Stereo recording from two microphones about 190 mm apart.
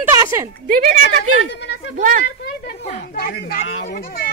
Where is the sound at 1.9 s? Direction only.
45° right (ahead or behind).